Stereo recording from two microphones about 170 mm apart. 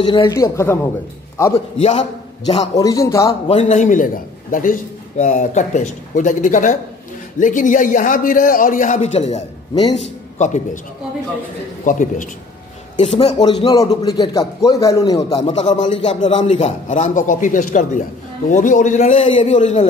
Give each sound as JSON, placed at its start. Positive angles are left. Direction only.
{"t": 0.0, "sound": "a man's voice", "side_deg": 30}
{"t": 1.5, "sound": "a man's voice", "side_deg": 40}
{"t": 2.4, "sound": "a man's voice", "side_deg": 25}
{"t": 3.4, "sound": "a man's voice", "side_deg": 45}
{"t": 11.8, "sound": "a man's voice", "side_deg": 50}
{"t": 12.9, "sound": "a man's voice", "side_deg": 40}
{"t": 15.7, "sound": "a man's voice", "side_deg": 45}